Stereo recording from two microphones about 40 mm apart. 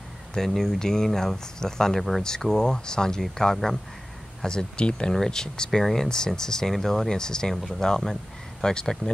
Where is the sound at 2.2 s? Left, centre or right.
Centre.